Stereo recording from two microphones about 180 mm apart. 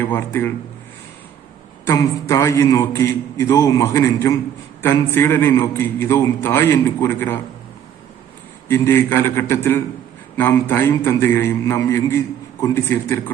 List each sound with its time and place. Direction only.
0.0 s a man's voice: 10° left (ahead or behind)
1.8 s a man's voice: 15° left (ahead or behind)
8.6 s a man's voice: 15° left (ahead or behind)